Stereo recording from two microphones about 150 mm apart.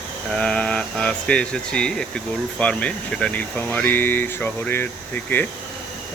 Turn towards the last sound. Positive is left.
turn(degrees=15)  # may be behind; listen again after turning